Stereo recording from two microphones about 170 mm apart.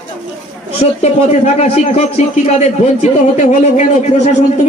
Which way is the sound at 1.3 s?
40° left (ahead or behind).